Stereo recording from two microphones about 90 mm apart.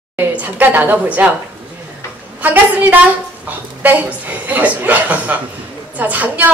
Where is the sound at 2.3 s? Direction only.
20° right (ahead or behind).